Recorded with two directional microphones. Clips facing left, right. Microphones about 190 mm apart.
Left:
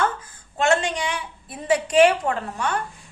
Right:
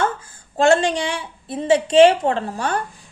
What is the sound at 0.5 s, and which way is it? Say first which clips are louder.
A woman's voice: right 5 dB; 30° right (ahead or behind).